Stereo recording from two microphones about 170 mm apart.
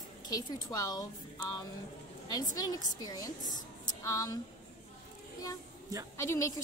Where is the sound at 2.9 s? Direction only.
20° left (ahead or behind).